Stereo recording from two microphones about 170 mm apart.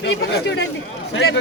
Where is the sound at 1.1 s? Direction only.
90° left.